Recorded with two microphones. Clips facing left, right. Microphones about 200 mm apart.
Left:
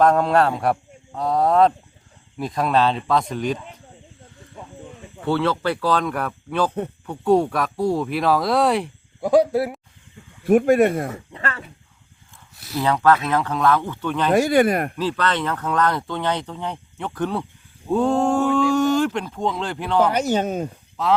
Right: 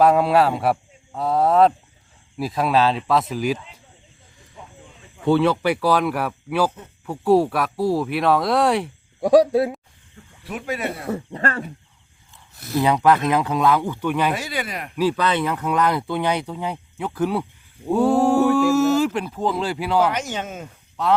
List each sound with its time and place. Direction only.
0.0 s speech: 5° right (ahead or behind)
5.2 s speech: 15° right (ahead or behind)
9.5 s speech: 20° right (ahead or behind)
10.4 s speech: 50° left (ahead or behind)
11.3 s speech: 40° right (ahead or behind)
12.5 s a sound: 55° right (ahead or behind)
12.8 s speech: 15° right (ahead or behind)
14.3 s speech: 50° left (ahead or behind)
14.9 s speech: 10° right (ahead or behind)
20.1 s speech: 35° left (ahead or behind)
21.0 s speech: centre (ahead or behind)